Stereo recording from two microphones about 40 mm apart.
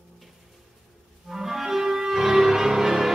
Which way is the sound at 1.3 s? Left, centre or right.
Centre.